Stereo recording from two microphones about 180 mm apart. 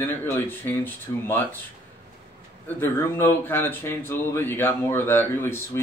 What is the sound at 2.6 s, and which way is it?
Speech, 10° left (ahead or behind).